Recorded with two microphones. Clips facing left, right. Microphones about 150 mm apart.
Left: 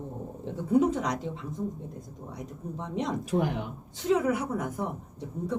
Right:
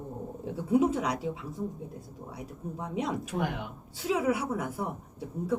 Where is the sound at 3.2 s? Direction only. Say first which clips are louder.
Left 4 dB; 40° left (ahead or behind).